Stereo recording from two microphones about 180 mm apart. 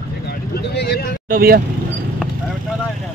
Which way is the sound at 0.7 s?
60° left (ahead or behind).